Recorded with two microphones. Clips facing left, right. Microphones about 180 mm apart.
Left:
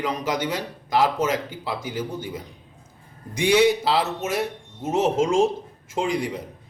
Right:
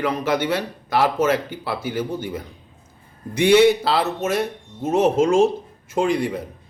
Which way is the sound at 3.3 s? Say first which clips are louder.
Right 5 dB; 60° right (ahead or behind).